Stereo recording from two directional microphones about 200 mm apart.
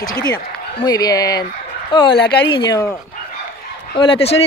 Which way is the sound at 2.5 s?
20° left (ahead or behind).